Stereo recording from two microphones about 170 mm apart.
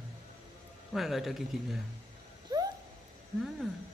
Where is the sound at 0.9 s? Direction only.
Centre (ahead or behind).